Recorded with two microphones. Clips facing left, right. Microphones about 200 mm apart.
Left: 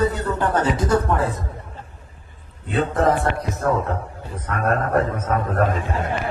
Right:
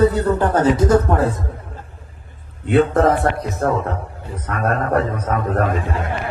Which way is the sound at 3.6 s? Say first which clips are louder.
Right 2 dB; 65° right (ahead or behind).